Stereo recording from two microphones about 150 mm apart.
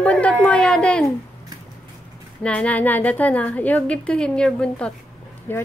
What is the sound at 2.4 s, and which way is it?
A woman's voice, 10° left (ahead or behind).